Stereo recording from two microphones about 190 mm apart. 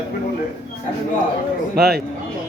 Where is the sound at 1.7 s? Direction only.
55° right (ahead or behind).